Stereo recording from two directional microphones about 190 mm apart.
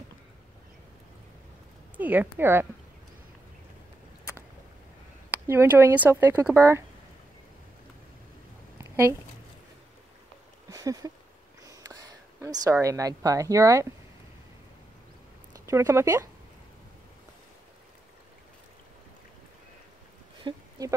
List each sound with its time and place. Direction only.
2.0 s speech: 10° right (ahead or behind)
5.5 s speech: 10° right (ahead or behind)
8.7 s a sound: 10° right (ahead or behind)
10.7 s a sound: 20° right (ahead or behind)
12.8 s speech: 15° right (ahead or behind)
15.5 s speech: 15° right (ahead or behind)
20.5 s speech: 25° right (ahead or behind)